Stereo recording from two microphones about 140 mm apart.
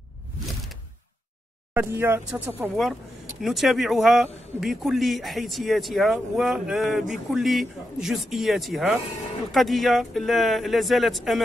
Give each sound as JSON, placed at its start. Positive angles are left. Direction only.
{"t": 1.7, "sound": "speech", "side_deg": -15}
{"t": 2.7, "sound": "speech", "side_deg": 0}